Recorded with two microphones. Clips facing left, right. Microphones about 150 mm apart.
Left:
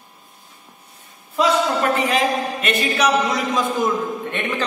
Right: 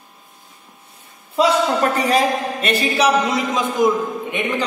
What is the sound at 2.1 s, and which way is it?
A man's voice, 35° right (ahead or behind).